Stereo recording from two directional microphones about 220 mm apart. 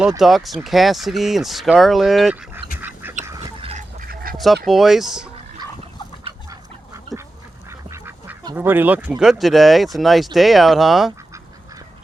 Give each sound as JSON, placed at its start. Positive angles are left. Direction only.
{"t": 0.2, "sound": "speech", "side_deg": 0}
{"t": 2.8, "sound": "duck", "side_deg": -10}
{"t": 3.7, "sound": "duck", "side_deg": -35}
{"t": 4.6, "sound": "speech", "side_deg": 0}
{"t": 6.2, "sound": "duck", "side_deg": -15}
{"t": 7.7, "sound": "speech", "side_deg": -10}